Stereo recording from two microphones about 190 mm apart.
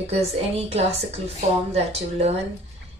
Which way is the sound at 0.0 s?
35° right (ahead or behind).